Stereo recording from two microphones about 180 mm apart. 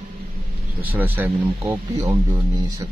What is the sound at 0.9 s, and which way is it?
Speech, 10° right (ahead or behind).